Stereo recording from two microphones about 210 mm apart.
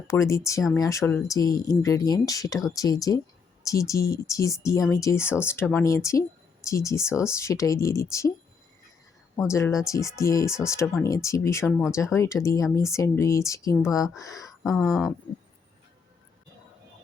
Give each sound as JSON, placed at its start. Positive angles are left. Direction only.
{"t": 0.1, "sound": "speech", "side_deg": 15}
{"t": 9.5, "sound": "speech", "side_deg": 15}
{"t": 14.8, "sound": "a sound", "side_deg": 0}